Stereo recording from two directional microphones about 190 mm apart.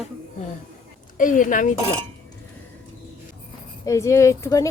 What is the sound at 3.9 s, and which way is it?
Speech, 15° left (ahead or behind).